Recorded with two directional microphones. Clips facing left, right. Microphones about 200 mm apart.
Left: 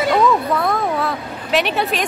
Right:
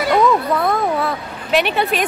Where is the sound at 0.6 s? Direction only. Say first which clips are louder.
Right 1 dB; centre (ahead or behind).